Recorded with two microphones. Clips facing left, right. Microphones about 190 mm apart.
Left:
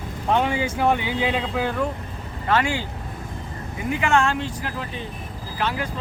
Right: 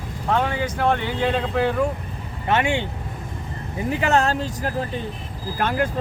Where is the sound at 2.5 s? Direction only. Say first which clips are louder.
Right 1 dB; 25° right (ahead or behind).